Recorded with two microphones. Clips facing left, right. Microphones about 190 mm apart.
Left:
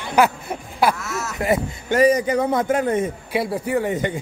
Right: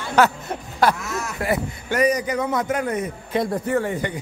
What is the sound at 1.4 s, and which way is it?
A man's voice, 25° left (ahead or behind).